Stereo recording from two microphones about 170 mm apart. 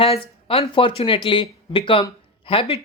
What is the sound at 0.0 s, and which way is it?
Speech, 35° left (ahead or behind).